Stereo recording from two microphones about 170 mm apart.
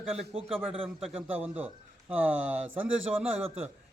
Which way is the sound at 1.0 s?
10° right (ahead or behind).